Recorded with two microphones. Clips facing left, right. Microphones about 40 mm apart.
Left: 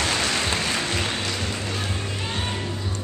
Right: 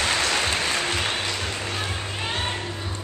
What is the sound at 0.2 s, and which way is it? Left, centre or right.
Music, centre.